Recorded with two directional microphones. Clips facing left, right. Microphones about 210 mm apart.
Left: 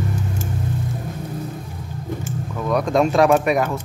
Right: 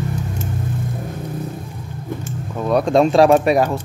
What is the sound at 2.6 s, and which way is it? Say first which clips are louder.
Speech: right 4 dB; 30° right (ahead or behind).